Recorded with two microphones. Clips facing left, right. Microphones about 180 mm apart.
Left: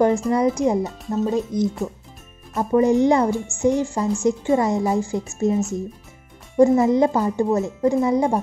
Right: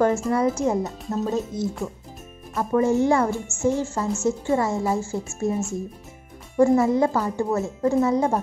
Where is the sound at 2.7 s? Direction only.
15° left (ahead or behind).